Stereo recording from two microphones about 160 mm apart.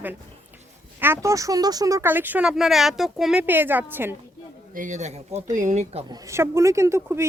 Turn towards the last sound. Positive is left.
turn(degrees=-15)  # may be behind; listen again after turning